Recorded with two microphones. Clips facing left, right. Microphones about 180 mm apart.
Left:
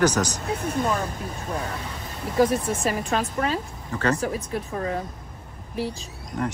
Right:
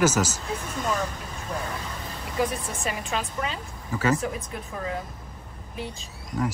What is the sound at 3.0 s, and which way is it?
A woman's voice, 40° left (ahead or behind).